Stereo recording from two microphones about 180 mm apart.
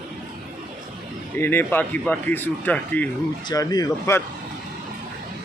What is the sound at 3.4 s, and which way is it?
Speech, 20° left (ahead or behind).